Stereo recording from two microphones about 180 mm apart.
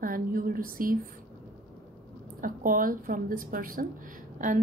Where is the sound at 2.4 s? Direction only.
50° right (ahead or behind).